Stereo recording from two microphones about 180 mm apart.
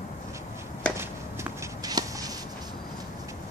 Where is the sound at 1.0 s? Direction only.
15° right (ahead or behind).